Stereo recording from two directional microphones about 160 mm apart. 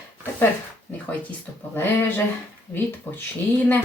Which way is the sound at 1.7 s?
15° left (ahead or behind).